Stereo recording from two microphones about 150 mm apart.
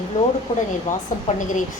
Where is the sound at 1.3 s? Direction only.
50° left (ahead or behind).